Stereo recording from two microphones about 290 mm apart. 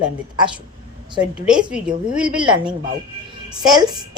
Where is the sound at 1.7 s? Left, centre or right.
Centre.